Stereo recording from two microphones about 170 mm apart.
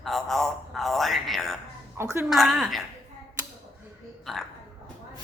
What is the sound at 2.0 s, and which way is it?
Speech, 15° right (ahead or behind).